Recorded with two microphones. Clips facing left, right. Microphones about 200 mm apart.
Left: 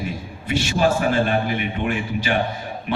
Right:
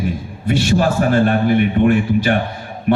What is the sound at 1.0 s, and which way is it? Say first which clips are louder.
A man's voice: right 5 dB; 50° right (ahead or behind).